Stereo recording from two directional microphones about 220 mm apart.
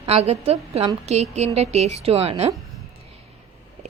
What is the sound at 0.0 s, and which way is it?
A woman's voice, 30° right (ahead or behind).